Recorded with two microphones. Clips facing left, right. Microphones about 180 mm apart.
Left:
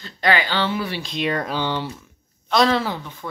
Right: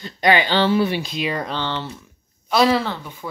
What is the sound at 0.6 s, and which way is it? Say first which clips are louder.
Speech: right 6 dB; 35° right (ahead or behind).